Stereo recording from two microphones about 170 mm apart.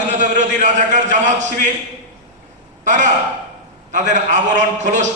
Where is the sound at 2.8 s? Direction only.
45° right (ahead or behind).